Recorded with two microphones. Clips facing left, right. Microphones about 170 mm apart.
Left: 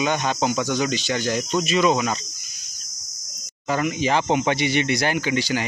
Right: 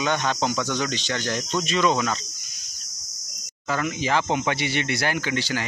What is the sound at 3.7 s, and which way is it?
Speech, 20° left (ahead or behind).